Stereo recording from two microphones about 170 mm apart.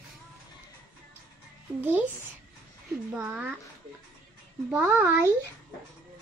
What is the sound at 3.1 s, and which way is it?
Speech, 10° right (ahead or behind).